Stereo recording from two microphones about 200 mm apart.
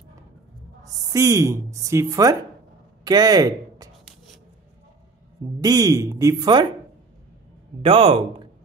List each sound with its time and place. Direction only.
1.1 s speech: 15° right (ahead or behind)
5.6 s speech: 20° right (ahead or behind)
7.8 s speech: 30° right (ahead or behind)